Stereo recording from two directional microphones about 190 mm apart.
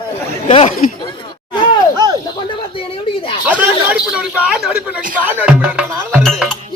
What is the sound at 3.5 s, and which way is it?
Speech, 5° right (ahead or behind).